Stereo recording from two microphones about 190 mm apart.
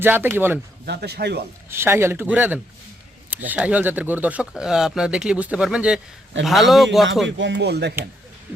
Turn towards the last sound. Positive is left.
turn(degrees=-60)  # may be behind; listen again after turning